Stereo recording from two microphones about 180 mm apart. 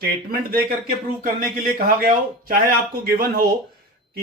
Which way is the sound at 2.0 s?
55° right (ahead or behind).